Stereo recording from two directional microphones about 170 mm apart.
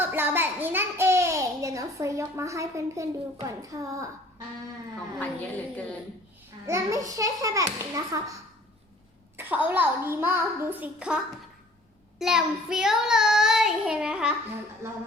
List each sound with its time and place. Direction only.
0.0 s a sound: 10° right (ahead or behind)
3.4 s a child's voice: 20° right (ahead or behind)
6.7 s a child's voice: 20° right (ahead or behind)
9.4 s a child's voice: 10° right (ahead or behind)
12.2 s child singing: 5° right (ahead or behind)
14.8 s a child's voice: 15° right (ahead or behind)